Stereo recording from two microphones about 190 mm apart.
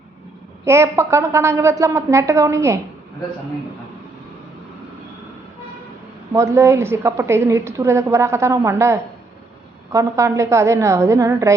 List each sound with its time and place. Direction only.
0.6 s a woman's voice: 15° right (ahead or behind)
6.3 s a woman's voice: 15° right (ahead or behind)